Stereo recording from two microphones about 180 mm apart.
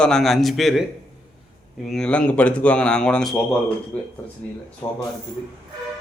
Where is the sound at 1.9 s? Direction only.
5° left (ahead or behind).